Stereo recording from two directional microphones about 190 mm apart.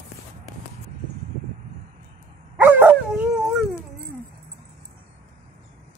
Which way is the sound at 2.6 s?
10° right (ahead or behind).